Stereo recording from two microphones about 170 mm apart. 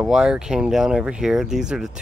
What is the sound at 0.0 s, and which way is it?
Speech, 5° right (ahead or behind).